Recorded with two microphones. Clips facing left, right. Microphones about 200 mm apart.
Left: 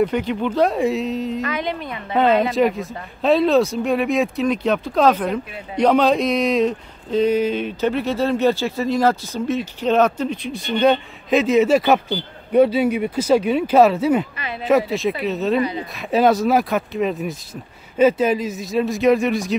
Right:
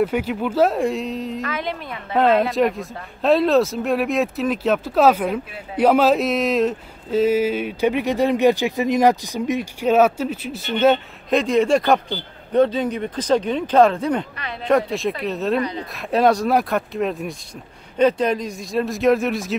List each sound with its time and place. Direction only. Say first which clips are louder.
0.0 s speech: left 1 dB; 5° right (ahead or behind)